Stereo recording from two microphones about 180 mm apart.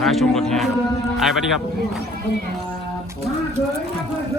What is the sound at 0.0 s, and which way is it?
Speech, centre (ahead or behind).